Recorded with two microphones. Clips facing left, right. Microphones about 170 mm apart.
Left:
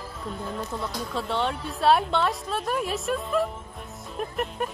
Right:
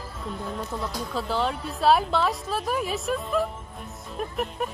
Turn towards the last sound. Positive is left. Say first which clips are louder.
# even
turn(degrees=0)  # may be behind; listen again after turning